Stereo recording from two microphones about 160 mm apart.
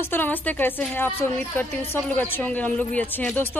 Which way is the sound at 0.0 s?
10° left (ahead or behind).